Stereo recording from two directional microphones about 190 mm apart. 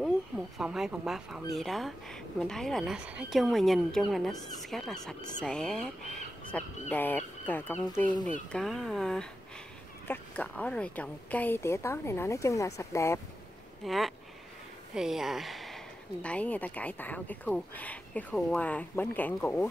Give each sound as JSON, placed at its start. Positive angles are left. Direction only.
{"t": 0.6, "sound": "speech", "side_deg": -5}
{"t": 8.5, "sound": "speech", "side_deg": 0}
{"t": 13.8, "sound": "speech", "side_deg": 0}